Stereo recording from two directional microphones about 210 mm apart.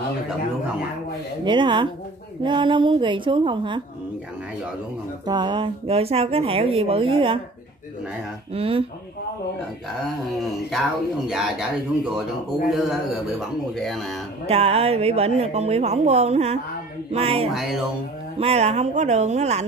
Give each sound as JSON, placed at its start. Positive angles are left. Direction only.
{"t": 1.4, "sound": "speech", "side_deg": -20}
{"t": 5.2, "sound": "speech", "side_deg": -20}
{"t": 8.5, "sound": "speech", "side_deg": -25}
{"t": 10.7, "sound": "speech", "side_deg": 0}
{"t": 14.4, "sound": "speech", "side_deg": -30}